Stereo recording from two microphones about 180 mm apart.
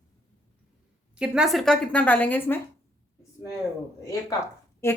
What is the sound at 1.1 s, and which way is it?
Speech, 5° right (ahead or behind).